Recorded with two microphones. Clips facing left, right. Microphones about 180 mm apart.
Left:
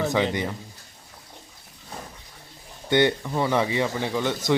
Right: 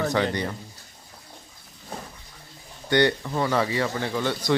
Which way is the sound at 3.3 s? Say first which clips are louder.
Left 1 dB; 15° left (ahead or behind).